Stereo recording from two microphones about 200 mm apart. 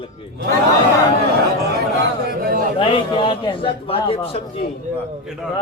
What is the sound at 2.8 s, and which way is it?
A man's voice, 25° left (ahead or behind).